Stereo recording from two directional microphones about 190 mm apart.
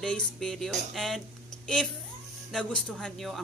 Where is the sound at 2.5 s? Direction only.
5° left (ahead or behind).